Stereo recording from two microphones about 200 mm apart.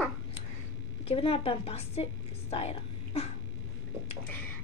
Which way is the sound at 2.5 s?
30° left (ahead or behind).